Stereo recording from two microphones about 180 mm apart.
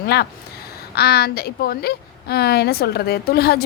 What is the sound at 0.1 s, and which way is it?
A woman's voice, 65° left (ahead or behind).